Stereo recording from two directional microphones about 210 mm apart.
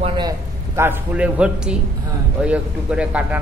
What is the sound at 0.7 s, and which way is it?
A man's voice, 10° right (ahead or behind).